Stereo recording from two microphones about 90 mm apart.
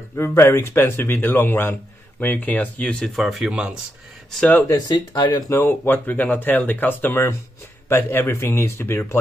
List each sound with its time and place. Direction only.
0.1 s a man's voice: 25° left (ahead or behind)
3.2 s speech: 5° right (ahead or behind)
4.6 s speech: 50° left (ahead or behind)
5.5 s a man's voice: 25° left (ahead or behind)